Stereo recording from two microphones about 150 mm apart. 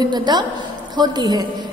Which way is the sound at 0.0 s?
30° right (ahead or behind).